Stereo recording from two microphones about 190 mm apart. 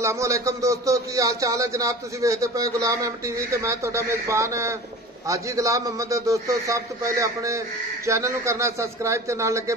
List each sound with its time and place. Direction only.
0.0 s speech: 15° right (ahead or behind)